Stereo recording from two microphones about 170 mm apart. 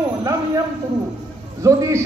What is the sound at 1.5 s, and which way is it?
Speech, 20° right (ahead or behind).